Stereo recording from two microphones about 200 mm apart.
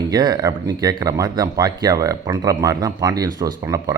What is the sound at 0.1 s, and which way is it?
Speech, 20° right (ahead or behind).